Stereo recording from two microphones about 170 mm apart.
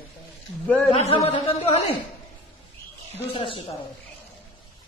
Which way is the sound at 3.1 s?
30° left (ahead or behind).